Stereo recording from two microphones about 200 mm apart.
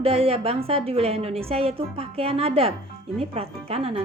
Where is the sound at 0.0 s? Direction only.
30° right (ahead or behind).